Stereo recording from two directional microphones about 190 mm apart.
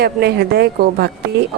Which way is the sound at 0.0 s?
60° right (ahead or behind).